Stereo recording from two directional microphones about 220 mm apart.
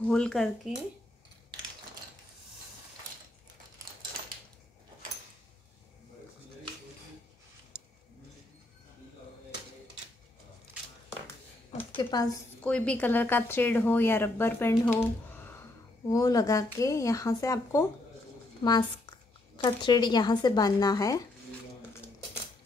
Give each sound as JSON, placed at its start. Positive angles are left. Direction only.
{"t": 0.0, "sound": "speech", "side_deg": 5}
{"t": 12.0, "sound": "speech", "side_deg": 20}
{"t": 12.6, "sound": "a woman's voice", "side_deg": 5}